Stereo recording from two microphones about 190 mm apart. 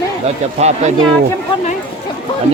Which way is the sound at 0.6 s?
35° right (ahead or behind).